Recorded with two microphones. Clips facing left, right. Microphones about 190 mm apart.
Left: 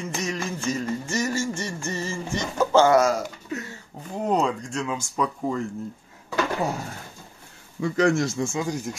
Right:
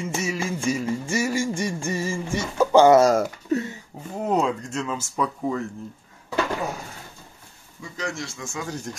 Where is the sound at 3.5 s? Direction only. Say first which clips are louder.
Right 9 dB; 40° right (ahead or behind).